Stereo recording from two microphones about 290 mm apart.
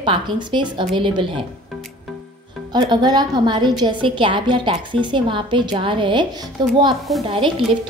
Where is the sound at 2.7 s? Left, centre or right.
Centre.